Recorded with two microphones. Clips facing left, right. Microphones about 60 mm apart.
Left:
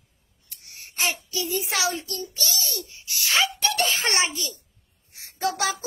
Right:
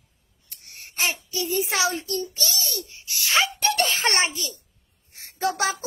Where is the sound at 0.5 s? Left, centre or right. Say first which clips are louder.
Right 1 dB; right.